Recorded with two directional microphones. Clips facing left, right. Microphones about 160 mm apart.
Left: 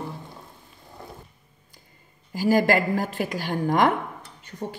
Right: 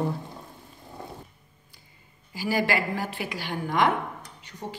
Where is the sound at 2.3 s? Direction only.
45° left (ahead or behind).